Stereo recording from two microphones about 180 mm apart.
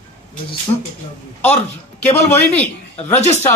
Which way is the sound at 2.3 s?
10° left (ahead or behind).